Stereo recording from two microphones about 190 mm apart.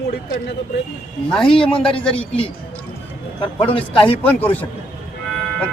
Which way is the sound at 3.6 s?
30° left (ahead or behind).